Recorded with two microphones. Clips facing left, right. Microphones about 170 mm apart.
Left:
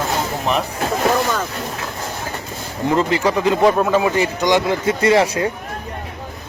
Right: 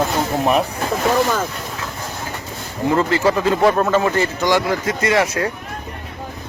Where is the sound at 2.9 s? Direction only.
15° left (ahead or behind).